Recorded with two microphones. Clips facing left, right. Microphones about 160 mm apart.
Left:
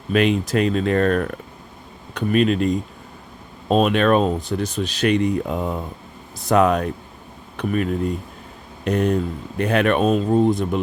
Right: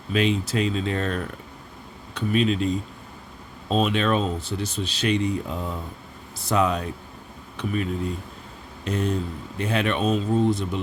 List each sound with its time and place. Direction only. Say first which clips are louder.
0.1 s speech: left 5 dB; 60° left (ahead or behind)